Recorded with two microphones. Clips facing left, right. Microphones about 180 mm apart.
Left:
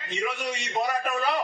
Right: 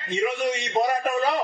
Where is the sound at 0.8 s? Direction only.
45° right (ahead or behind).